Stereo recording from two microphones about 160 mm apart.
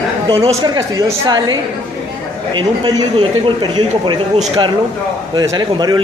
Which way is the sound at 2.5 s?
30° right (ahead or behind).